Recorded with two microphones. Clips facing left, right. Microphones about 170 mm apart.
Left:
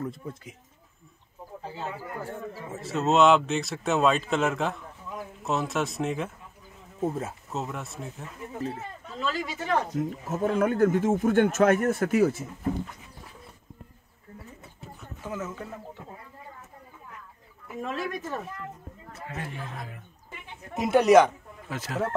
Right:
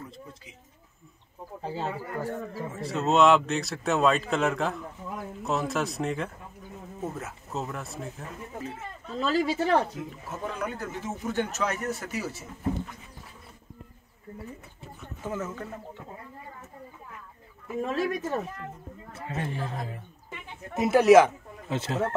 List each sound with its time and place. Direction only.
0.0 s speech: 55° left (ahead or behind)
1.6 s speech: 30° right (ahead or behind)
2.8 s speech: centre (ahead or behind)
7.0 s speech: 30° left (ahead or behind)
7.5 s speech: centre (ahead or behind)
9.2 s speech: 35° right (ahead or behind)
9.9 s speech: 45° left (ahead or behind)
15.0 s speech: centre (ahead or behind)
17.8 s a man's voice: 35° right (ahead or behind)
20.7 s speech: centre (ahead or behind)
21.6 s speech: 25° right (ahead or behind)